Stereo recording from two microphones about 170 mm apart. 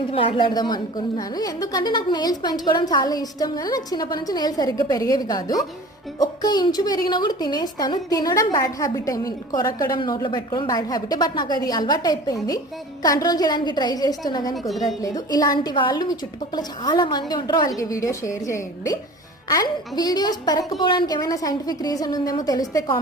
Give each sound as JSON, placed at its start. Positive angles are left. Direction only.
{"t": 0.1, "sound": "a woman's voice", "side_deg": 35}